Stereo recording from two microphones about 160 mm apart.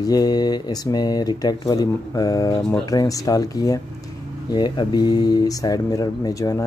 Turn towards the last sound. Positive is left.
turn(degrees=20)  # may be behind; listen again after turning